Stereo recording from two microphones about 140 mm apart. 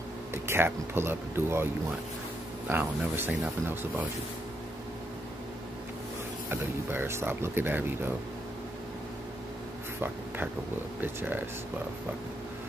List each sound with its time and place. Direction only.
0.3 s speech: 15° right (ahead or behind)
6.5 s speech: 15° right (ahead or behind)
10.0 s a sound: 15° right (ahead or behind)
11.0 s speech: 15° right (ahead or behind)